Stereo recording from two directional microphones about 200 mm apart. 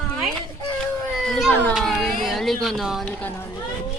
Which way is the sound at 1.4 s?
Centre (ahead or behind).